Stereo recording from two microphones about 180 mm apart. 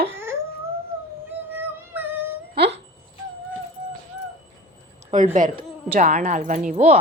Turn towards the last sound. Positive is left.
turn(degrees=-40)  # may be behind; listen again after turning